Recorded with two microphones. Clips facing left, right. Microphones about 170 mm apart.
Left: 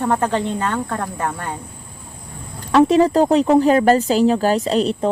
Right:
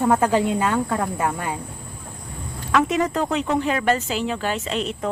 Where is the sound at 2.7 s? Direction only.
30° left (ahead or behind).